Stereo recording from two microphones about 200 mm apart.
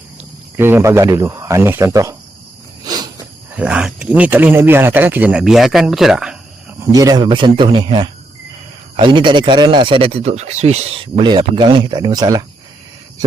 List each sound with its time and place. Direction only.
0.2 s speech: 10° right (ahead or behind)
2.8 s cricket: 20° right (ahead or behind)
3.5 s speech: 5° right (ahead or behind)
6.7 s speech: 15° right (ahead or behind)